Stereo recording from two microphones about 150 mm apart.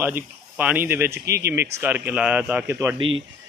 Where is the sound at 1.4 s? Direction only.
90° right.